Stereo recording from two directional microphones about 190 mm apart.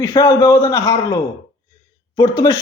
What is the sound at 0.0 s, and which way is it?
A woman's voice, 20° left (ahead or behind).